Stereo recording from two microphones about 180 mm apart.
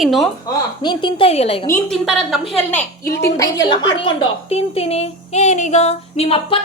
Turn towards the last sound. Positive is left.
turn(degrees=30)  # may be behind; listen again after turning